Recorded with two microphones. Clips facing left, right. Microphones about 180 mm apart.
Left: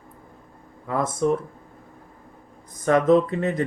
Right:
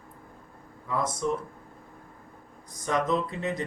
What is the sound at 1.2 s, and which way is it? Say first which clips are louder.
Speech: left 9 dB; 55° left (ahead or behind).